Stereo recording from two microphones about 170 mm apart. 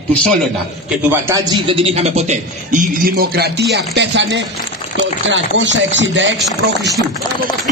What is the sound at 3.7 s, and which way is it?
Speech, 85° right.